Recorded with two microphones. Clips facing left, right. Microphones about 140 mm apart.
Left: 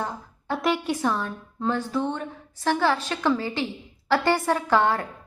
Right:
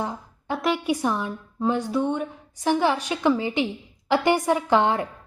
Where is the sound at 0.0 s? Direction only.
15° right (ahead or behind).